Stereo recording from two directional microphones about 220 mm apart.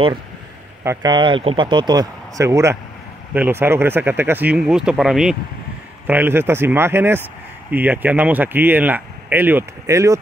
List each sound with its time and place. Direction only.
0.8 s speech: 20° right (ahead or behind)